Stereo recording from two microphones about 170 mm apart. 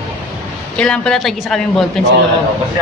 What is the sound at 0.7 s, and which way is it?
A woman's voice, 5° left (ahead or behind).